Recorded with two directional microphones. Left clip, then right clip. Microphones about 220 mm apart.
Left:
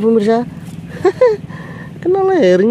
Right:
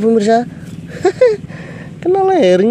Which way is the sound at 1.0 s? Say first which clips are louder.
Even; centre (ahead or behind).